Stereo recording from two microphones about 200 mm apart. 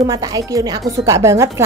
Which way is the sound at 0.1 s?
15° right (ahead or behind).